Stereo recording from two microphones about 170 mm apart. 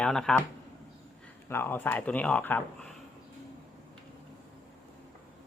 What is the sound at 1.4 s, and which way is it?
Speech, 15° left (ahead or behind).